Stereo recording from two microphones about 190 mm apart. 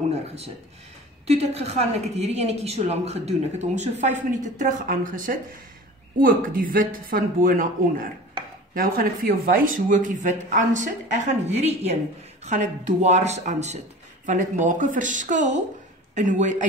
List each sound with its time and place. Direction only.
0.1 s a woman's voice: 35° right (ahead or behind)